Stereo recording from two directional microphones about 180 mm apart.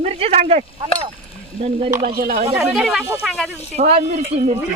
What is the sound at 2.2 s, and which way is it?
Speech, 55° right (ahead or behind).